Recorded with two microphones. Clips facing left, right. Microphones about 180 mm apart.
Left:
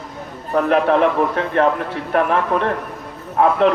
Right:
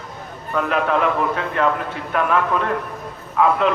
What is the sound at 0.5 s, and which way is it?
Speech, 45° left (ahead or behind).